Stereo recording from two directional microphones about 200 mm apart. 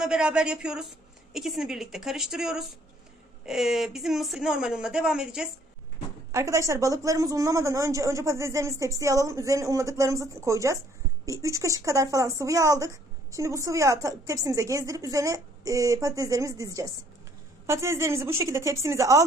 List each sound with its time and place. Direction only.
0.0 s speech: 5° right (ahead or behind)
6.3 s speech: 15° right (ahead or behind)